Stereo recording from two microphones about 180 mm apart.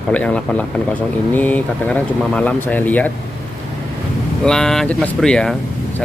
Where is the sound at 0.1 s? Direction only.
5° left (ahead or behind).